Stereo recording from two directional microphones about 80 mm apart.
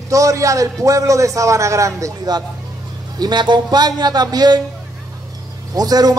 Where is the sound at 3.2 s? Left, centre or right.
Right.